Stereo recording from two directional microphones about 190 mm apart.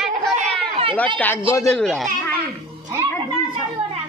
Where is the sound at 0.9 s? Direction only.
5° left (ahead or behind).